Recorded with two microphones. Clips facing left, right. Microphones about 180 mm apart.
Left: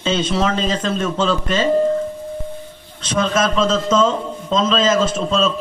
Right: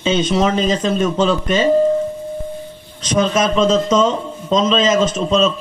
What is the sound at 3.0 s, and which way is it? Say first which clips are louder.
Speech: right 2 dB; 15° right (ahead or behind).